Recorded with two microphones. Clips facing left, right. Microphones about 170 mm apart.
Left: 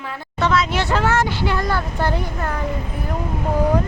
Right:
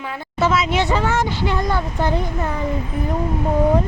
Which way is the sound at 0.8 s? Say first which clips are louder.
Even; 15° right (ahead or behind).